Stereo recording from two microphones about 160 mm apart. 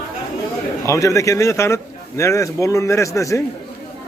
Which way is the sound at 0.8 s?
20° left (ahead or behind).